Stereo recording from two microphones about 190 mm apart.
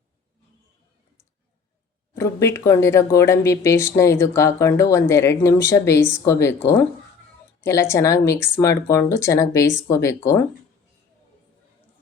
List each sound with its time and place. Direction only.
2.1 s speech: 15° left (ahead or behind)